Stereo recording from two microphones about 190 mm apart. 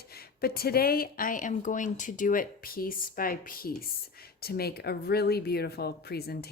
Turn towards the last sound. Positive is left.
turn(degrees=55)  # may be behind; listen again after turning